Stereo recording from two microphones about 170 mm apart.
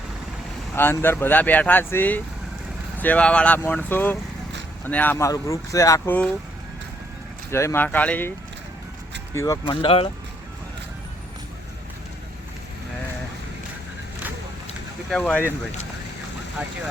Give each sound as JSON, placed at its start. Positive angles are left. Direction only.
{"t": 0.8, "sound": "speech", "side_deg": 10}
{"t": 7.5, "sound": "speech", "side_deg": 15}
{"t": 9.3, "sound": "speech", "side_deg": 15}
{"t": 9.8, "sound": "speech", "side_deg": 35}
{"t": 15.1, "sound": "speech", "side_deg": 10}